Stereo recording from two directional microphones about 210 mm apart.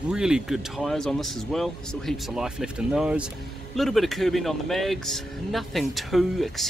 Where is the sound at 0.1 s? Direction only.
5° right (ahead or behind).